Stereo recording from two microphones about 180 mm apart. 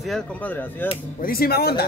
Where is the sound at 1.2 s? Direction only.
55° left (ahead or behind).